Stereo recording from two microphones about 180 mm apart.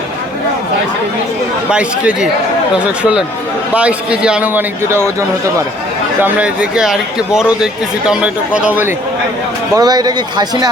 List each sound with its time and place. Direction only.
1.7 s a man's voice: 5° right (ahead or behind)
6.2 s a man's voice: 10° right (ahead or behind)
9.7 s speech: 20° right (ahead or behind)